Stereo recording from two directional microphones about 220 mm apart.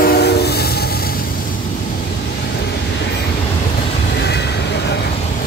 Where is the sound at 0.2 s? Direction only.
45° left (ahead or behind).